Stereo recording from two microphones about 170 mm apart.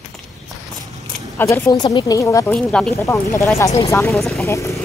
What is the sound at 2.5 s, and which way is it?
Speech, 5° left (ahead or behind).